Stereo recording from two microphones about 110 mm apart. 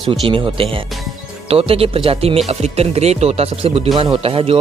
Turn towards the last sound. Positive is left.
turn(degrees=-60)  # may be behind; listen again after turning